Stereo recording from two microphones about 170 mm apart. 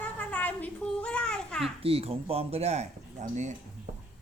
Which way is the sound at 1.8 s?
35° right (ahead or behind).